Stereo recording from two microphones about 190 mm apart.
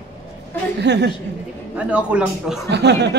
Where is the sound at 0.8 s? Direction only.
65° right (ahead or behind).